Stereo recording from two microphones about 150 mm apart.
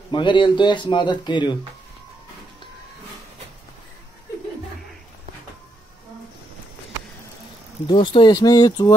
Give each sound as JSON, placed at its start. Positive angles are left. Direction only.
{"t": 0.1, "sound": "a man's voice", "side_deg": 30}
{"t": 7.9, "sound": "speech", "side_deg": 30}